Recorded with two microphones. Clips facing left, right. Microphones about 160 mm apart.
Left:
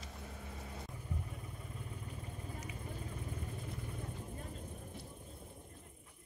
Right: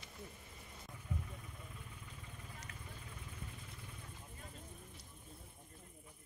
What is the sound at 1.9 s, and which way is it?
Vehicle, 35° left (ahead or behind).